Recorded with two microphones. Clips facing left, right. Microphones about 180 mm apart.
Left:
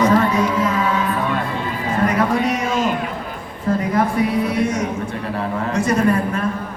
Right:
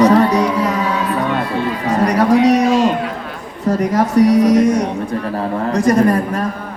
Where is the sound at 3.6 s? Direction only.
40° right (ahead or behind).